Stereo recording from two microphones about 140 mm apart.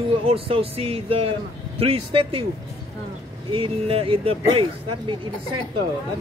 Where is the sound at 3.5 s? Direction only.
40° right (ahead or behind).